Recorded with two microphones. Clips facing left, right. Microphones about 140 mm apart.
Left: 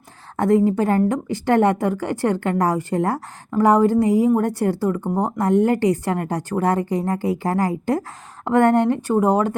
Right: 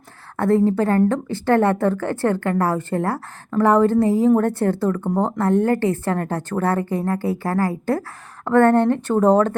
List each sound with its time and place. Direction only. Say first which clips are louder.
0.3 s a woman's voice: even; 15° left (ahead or behind)